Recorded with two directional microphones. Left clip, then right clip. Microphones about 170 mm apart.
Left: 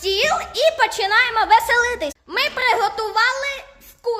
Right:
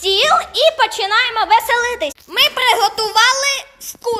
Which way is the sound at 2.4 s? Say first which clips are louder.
Right 5 dB; 20° right (ahead or behind).